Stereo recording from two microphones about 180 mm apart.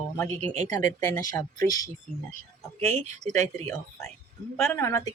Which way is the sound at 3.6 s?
15° left (ahead or behind).